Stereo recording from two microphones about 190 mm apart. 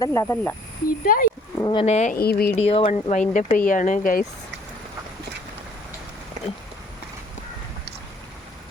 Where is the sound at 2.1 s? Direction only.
55° left (ahead or behind).